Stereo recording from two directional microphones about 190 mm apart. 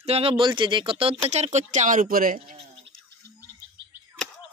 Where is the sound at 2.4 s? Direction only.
35° right (ahead or behind).